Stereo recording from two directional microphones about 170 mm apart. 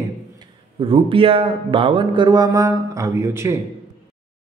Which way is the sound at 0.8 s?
30° right (ahead or behind).